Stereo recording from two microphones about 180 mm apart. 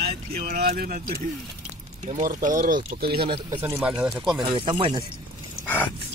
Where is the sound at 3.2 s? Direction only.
25° right (ahead or behind).